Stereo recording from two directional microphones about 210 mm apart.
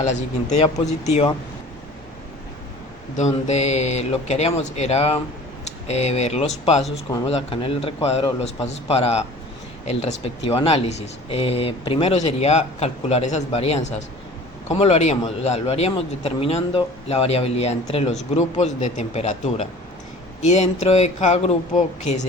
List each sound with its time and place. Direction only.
0.0 s speech: 35° left (ahead or behind)
3.2 s speech: 35° left (ahead or behind)